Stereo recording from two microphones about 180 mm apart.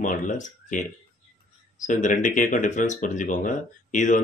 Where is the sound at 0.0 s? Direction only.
50° left (ahead or behind).